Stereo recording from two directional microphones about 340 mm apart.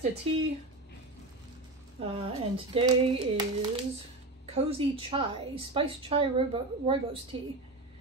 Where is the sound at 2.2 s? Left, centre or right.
Centre.